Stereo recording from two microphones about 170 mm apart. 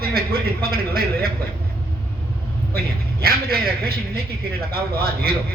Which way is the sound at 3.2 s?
65° right (ahead or behind).